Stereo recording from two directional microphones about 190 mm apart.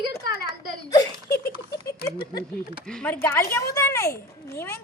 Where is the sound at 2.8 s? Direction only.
5° left (ahead or behind).